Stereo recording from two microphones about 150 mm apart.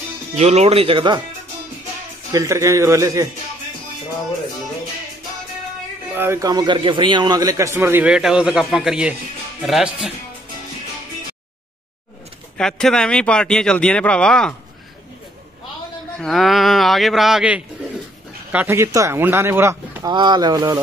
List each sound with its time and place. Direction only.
0.4 s speech: 45° right (ahead or behind)
2.3 s speech: 20° right (ahead or behind)
6.1 s a man's voice: 15° right (ahead or behind)
12.5 s speech: 5° left (ahead or behind)
16.2 s speech: centre (ahead or behind); by 20.8 s 25° right (ahead or behind)